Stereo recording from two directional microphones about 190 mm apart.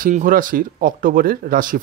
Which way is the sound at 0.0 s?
45° right (ahead or behind).